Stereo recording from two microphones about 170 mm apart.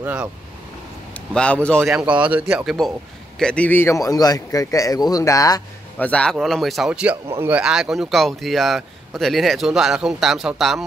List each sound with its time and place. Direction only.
0.0 s speech: 5° right (ahead or behind)
1.1 s a man's voice: 5° left (ahead or behind)
5.9 s speech: 5° left (ahead or behind)